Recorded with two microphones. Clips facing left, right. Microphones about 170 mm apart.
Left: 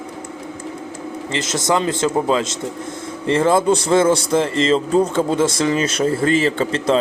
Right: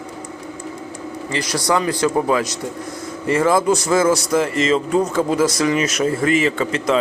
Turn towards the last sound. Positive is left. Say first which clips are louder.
# left 1 dB
turn(degrees=30)  # may be behind; listen again after turning